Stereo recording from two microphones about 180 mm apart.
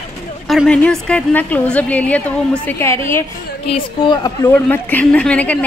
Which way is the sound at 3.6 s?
30° left (ahead or behind).